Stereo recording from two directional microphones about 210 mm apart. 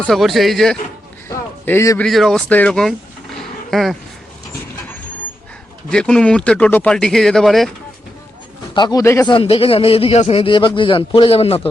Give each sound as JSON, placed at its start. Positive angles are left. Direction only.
{"t": 0.0, "sound": "speech", "side_deg": 0}
{"t": 1.3, "sound": "a sound", "side_deg": 10}
{"t": 2.0, "sound": "speech", "side_deg": 0}
{"t": 3.3, "sound": "roaring cats", "side_deg": 0}
{"t": 5.9, "sound": "speech", "side_deg": 5}
{"t": 8.7, "sound": "a man's voice", "side_deg": 20}